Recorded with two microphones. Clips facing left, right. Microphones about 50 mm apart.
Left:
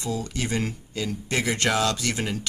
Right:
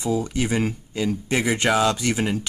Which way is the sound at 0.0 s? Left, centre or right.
Centre.